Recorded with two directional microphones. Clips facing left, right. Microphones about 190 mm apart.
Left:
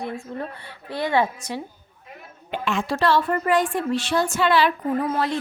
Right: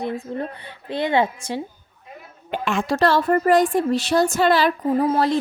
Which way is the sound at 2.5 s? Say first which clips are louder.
Right 2 dB; 45° right (ahead or behind).